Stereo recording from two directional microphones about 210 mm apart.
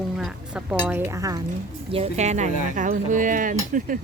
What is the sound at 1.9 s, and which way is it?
Speech, 30° right (ahead or behind).